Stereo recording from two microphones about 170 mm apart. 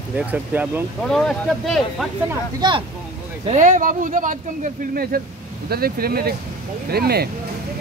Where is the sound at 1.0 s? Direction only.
Centre (ahead or behind).